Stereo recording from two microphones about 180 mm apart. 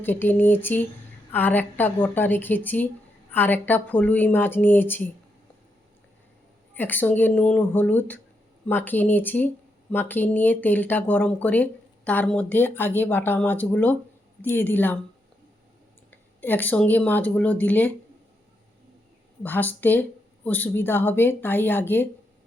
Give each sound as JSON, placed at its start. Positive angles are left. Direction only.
{"t": 0.0, "sound": "speech", "side_deg": 10}
{"t": 6.7, "sound": "speech", "side_deg": 10}
{"t": 16.4, "sound": "speech", "side_deg": 10}
{"t": 19.4, "sound": "speech", "side_deg": 10}